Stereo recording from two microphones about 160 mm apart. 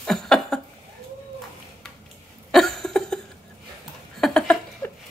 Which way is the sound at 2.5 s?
Centre (ahead or behind).